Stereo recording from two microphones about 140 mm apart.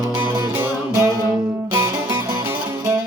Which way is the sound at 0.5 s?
15° right (ahead or behind).